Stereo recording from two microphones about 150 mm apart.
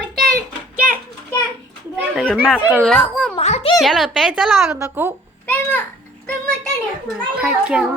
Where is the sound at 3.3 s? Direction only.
45° left (ahead or behind).